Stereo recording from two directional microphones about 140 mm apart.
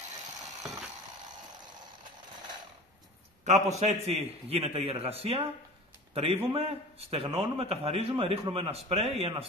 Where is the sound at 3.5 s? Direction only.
55° right (ahead or behind).